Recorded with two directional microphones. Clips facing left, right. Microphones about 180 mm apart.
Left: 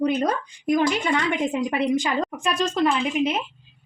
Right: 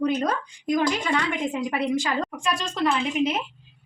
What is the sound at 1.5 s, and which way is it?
A woman's voice, 20° left (ahead or behind).